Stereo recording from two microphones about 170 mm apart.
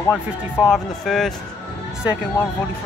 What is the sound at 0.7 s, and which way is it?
Speech, centre (ahead or behind).